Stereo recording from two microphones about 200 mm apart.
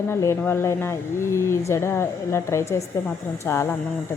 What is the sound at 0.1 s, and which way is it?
Speech, 15° left (ahead or behind).